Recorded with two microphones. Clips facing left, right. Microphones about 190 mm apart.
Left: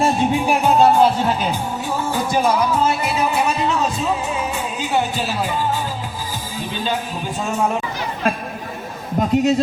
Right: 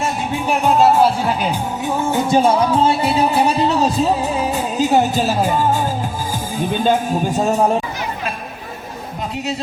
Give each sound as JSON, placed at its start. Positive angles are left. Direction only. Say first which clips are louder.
{"t": 0.8, "sound": "music", "louder": "right 1 dB", "side_deg": -5}
{"t": 2.0, "sound": "music", "louder": "right 4 dB", "side_deg": -25}
{"t": 6.6, "sound": "speech", "louder": "right 7 dB", "side_deg": -50}
{"t": 9.3, "sound": "speech", "louder": "left 10 dB", "side_deg": 45}